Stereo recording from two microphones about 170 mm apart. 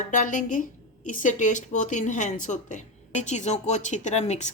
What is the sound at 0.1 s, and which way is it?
A woman's voice, 50° left (ahead or behind).